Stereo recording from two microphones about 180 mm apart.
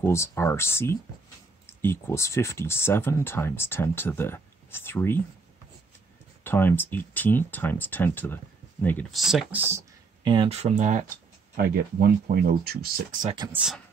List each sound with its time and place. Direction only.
0.0 s speech: 15° left (ahead or behind)
6.4 s speech: 10° left (ahead or behind)
9.2 s speech: centre (ahead or behind)
10.2 s speech: 25° right (ahead or behind); by 11.1 s 45° right (ahead or behind)
11.5 s speech: 60° right (ahead or behind)
13.5 s speech: 5° right (ahead or behind)